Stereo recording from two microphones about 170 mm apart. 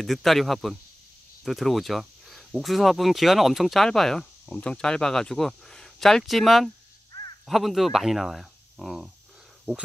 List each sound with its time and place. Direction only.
0.0 s speech: centre (ahead or behind)
7.1 s caw: 25° left (ahead or behind)
7.4 s speech: centre (ahead or behind)